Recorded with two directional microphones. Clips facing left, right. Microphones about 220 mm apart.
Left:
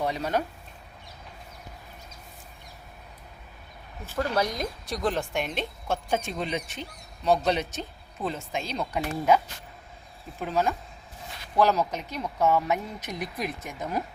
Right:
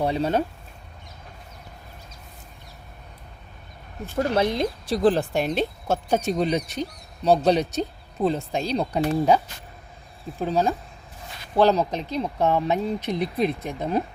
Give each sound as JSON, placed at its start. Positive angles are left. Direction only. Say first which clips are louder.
{"t": 0.0, "sound": "speech", "louder": "right 5 dB", "side_deg": -30}
{"t": 4.0, "sound": "speech", "louder": "right 5 dB", "side_deg": -15}
{"t": 4.4, "sound": "speech", "louder": "right 5 dB", "side_deg": -30}
{"t": 10.4, "sound": "speech", "louder": "right 4 dB", "side_deg": -35}